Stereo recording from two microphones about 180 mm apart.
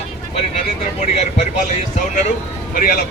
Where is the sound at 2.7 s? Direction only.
50° left (ahead or behind).